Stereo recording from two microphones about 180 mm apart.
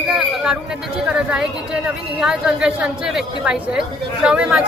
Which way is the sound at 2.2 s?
5° right (ahead or behind).